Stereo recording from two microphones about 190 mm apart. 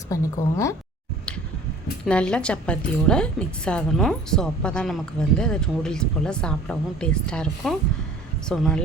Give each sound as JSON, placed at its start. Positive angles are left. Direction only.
{"t": 0.1, "sound": "speech", "side_deg": 15}
{"t": 2.0, "sound": "a woman's voice", "side_deg": 5}